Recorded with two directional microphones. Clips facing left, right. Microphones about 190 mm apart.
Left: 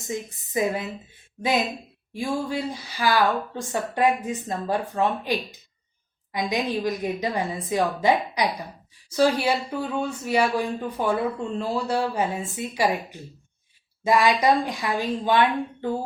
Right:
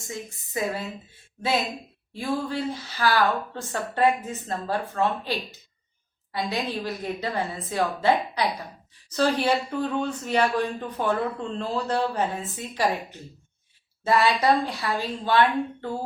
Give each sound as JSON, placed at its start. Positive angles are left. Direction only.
{"t": 0.1, "sound": "speech", "side_deg": 20}